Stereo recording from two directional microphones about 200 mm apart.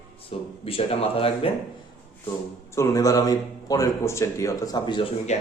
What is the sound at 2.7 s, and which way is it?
A man's voice, 15° left (ahead or behind).